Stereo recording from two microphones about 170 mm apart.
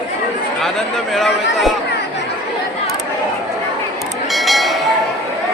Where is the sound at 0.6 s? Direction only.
Centre (ahead or behind).